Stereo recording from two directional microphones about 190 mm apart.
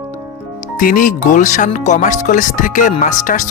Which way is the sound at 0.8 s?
45° left (ahead or behind).